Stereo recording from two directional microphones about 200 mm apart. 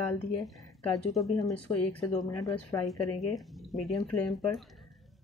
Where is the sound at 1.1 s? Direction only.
Centre (ahead or behind).